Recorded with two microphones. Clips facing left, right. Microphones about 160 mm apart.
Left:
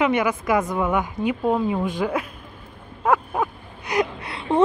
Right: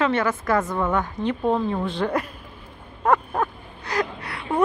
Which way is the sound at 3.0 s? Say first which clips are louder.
Even; 5° left (ahead or behind).